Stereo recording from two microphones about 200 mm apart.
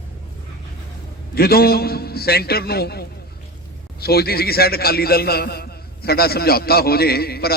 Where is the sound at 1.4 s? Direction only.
50° left (ahead or behind).